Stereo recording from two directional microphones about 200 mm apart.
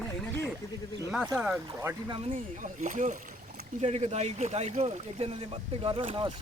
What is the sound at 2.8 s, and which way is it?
Speech, 40° right (ahead or behind).